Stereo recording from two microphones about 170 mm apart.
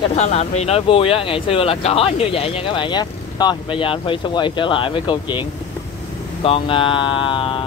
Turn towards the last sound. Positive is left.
turn(degrees=30)  # may be behind; listen again after turning